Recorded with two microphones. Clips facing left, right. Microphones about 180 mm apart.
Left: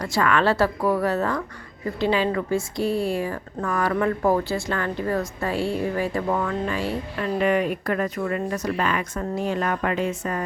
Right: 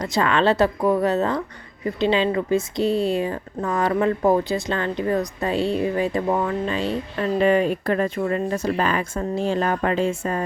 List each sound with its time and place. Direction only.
0.0 s speech: 20° right (ahead or behind)